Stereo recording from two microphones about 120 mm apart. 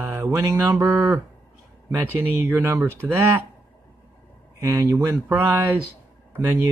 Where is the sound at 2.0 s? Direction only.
15° right (ahead or behind).